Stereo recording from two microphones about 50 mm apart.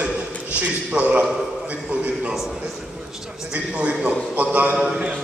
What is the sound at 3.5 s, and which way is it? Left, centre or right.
A man's voice, right.